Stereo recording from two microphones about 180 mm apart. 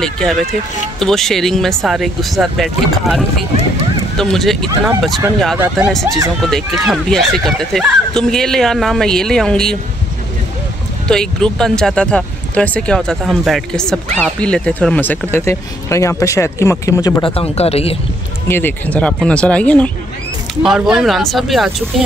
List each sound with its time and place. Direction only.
0.0 s speech: centre (ahead or behind)
11.1 s speech: 5° left (ahead or behind)
17.2 s speech: 30° left (ahead or behind)
18.5 s speech: 10° left (ahead or behind)